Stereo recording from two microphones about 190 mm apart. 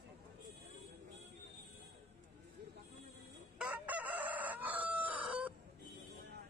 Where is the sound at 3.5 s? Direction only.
5° right (ahead or behind).